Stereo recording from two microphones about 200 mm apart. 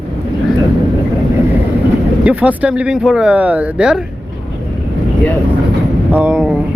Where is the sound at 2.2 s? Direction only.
5° right (ahead or behind).